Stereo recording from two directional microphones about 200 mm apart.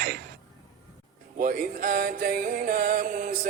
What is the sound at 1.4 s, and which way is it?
A man's voice, 45° right (ahead or behind).